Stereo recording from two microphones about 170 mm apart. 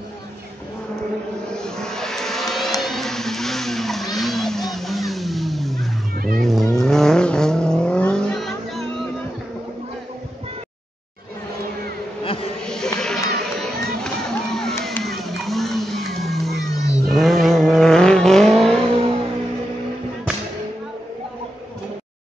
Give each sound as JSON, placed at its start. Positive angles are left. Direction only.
{"t": 1.6, "sound": "a sound", "side_deg": 5}
{"t": 6.1, "sound": "vehicle", "side_deg": -60}
{"t": 6.4, "sound": "vehicle", "side_deg": 0}
{"t": 12.6, "sound": "music", "side_deg": 5}